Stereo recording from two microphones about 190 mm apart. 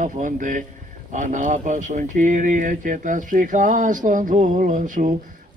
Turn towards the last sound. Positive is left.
turn(degrees=-40)  # may be behind; listen again after turning